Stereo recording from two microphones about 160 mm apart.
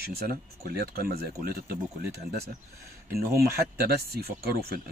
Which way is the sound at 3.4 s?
75° right (ahead or behind).